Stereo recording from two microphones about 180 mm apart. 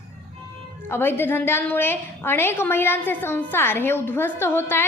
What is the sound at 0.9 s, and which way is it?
A woman's voice, 10° left (ahead or behind).